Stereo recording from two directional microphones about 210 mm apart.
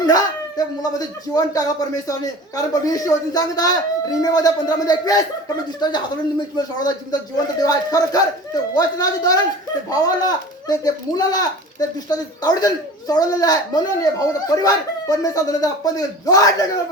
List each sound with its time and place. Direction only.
0.0 s a woman's voice: 20° left (ahead or behind)